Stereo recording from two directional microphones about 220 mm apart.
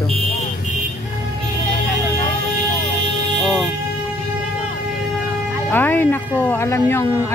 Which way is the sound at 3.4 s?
Centre (ahead or behind).